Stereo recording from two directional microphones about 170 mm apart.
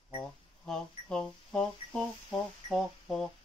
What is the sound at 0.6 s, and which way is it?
Speech, 5° left (ahead or behind).